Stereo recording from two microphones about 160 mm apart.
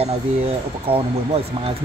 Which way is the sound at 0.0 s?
35° right (ahead or behind).